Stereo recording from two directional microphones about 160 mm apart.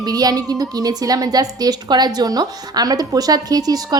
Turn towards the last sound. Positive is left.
turn(degrees=-25)  # may be behind; listen again after turning